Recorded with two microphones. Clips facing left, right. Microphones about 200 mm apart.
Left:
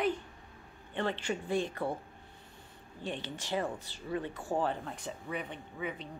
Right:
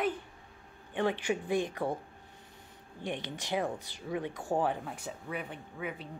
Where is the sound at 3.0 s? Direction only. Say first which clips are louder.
Right 2 dB; 15° right (ahead or behind).